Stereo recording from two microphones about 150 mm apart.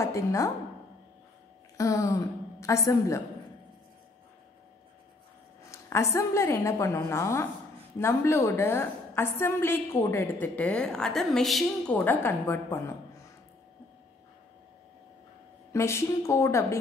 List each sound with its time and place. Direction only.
0.0 s a woman's voice: 20° left (ahead or behind)
1.8 s a woman's voice: 20° left (ahead or behind)
5.7 s a woman's voice: 20° left (ahead or behind)
15.7 s a woman's voice: 20° left (ahead or behind)